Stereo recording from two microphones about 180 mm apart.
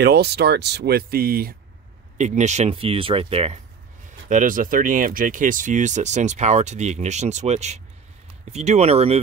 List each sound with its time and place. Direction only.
0.0 s speech: 65° right (ahead or behind)
2.1 s speech: 40° right (ahead or behind)
4.3 s speech: 50° right (ahead or behind)